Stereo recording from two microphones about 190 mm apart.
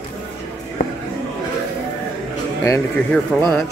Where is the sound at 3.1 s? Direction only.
10° left (ahead or behind).